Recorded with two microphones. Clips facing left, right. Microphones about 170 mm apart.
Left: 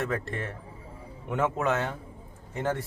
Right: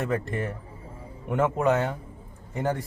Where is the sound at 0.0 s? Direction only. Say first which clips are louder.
Right 3 dB; 15° right (ahead or behind).